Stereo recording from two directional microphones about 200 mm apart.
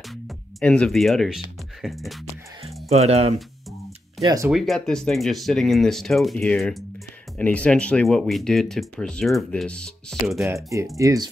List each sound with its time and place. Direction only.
0.6 s speech: 5° left (ahead or behind)
2.6 s music: 30° right (ahead or behind)
4.2 s speech: 20° right (ahead or behind)
4.5 s speech: centre (ahead or behind)
10.4 s speech: 15° right (ahead or behind)